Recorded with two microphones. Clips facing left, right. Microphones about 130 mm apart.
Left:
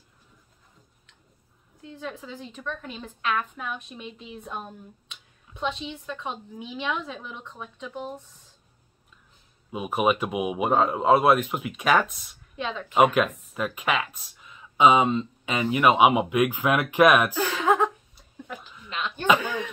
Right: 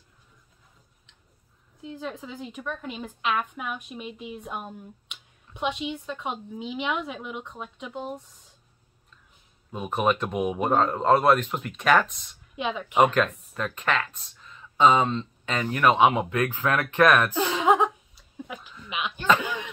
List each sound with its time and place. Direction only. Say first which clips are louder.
1.8 s a woman's voice: right 2 dB; 15° right (ahead or behind)
2.3 s a woman's voice: right 1 dB; 10° right (ahead or behind)
9.7 s speech: left 1 dB; 5° left (ahead or behind)
12.5 s speech: right 2 dB; 15° right (ahead or behind)
12.9 s speech: left 1 dB; 5° left (ahead or behind)
17.3 s a sound: right 1 dB; 15° right (ahead or behind)